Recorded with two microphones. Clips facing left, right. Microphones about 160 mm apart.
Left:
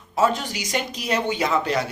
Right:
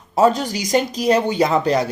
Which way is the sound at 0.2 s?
40° right (ahead or behind).